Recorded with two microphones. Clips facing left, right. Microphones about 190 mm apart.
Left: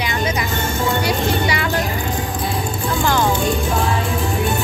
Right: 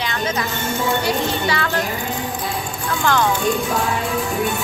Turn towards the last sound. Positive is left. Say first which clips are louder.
# left 1 dB
turn(degrees=10)  # may be behind; listen again after turning